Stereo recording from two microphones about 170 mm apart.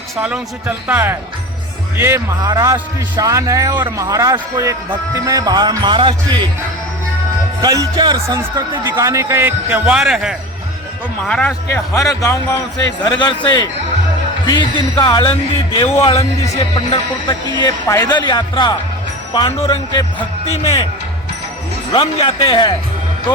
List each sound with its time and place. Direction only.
0.2 s a man's voice: 5° right (ahead or behind); by 6.4 s 30° right (ahead or behind)
7.6 s a man's voice: 20° right (ahead or behind); by 11.5 s 5° left (ahead or behind)
11.7 s a man's voice: 20° left (ahead or behind); by 20.0 s 35° left (ahead or behind)
21.9 s a man's voice: 30° left (ahead or behind)